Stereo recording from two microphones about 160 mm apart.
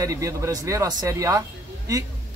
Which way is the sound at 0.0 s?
20° right (ahead or behind).